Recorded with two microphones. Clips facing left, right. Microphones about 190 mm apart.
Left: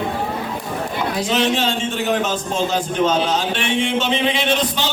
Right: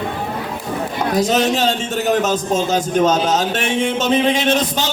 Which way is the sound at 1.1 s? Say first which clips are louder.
Right 4 dB; 40° right (ahead or behind).